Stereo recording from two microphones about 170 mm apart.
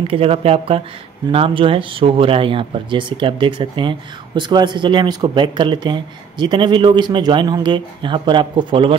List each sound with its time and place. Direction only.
0.1 s speech: 35° right (ahead or behind)